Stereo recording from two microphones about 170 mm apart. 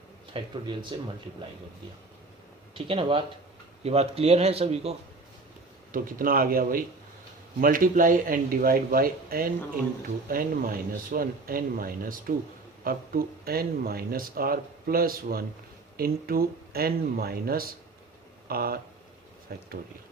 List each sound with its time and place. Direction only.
0.3 s speech: 30° right (ahead or behind)
2.7 s speech: 35° right (ahead or behind)
5.9 s speech: 55° right (ahead or behind)